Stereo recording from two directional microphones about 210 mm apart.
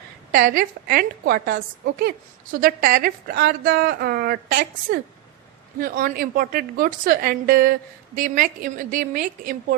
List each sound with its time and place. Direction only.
0.3 s a woman's voice: 40° right (ahead or behind)